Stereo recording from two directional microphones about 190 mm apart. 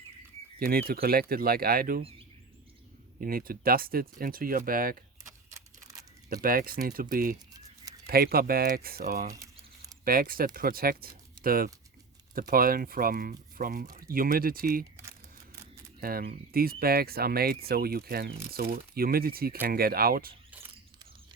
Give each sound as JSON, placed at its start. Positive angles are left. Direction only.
{"t": 0.9, "sound": "speech", "side_deg": -50}
{"t": 2.0, "sound": "speech", "side_deg": -30}
{"t": 3.2, "sound": "speech", "side_deg": -50}
{"t": 5.5, "sound": "a sound", "side_deg": -15}
{"t": 6.3, "sound": "speech", "side_deg": -50}
{"t": 9.3, "sound": "crumpling", "side_deg": -20}
{"t": 10.0, "sound": "speech", "side_deg": -50}
{"t": 16.0, "sound": "speech", "side_deg": -50}